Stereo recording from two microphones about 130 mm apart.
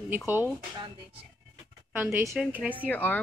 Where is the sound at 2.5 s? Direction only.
10° right (ahead or behind).